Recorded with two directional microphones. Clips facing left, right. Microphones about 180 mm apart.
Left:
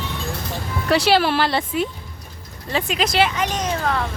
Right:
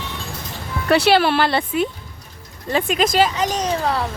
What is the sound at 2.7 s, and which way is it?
Speech, 45° right (ahead or behind).